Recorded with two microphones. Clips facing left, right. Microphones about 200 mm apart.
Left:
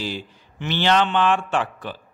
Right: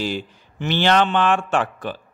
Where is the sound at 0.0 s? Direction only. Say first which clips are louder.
Right 4 dB; 45° right (ahead or behind).